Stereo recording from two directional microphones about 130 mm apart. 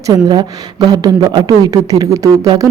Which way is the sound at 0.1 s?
35° right (ahead or behind).